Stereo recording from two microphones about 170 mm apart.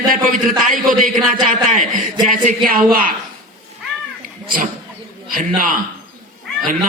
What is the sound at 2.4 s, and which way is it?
Speech, 55° right (ahead or behind).